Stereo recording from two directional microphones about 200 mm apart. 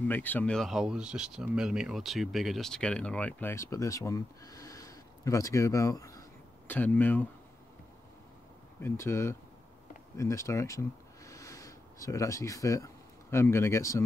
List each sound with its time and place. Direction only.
0.1 s speech: 10° left (ahead or behind)
8.8 s speech: 15° left (ahead or behind)